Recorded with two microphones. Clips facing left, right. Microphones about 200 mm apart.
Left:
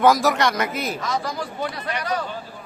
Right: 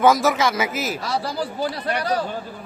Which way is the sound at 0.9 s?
35° right (ahead or behind).